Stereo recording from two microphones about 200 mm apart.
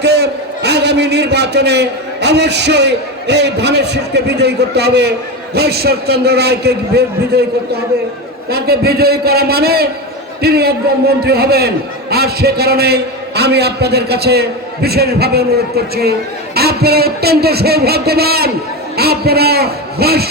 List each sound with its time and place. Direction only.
0.0 s a man's voice: 55° right (ahead or behind)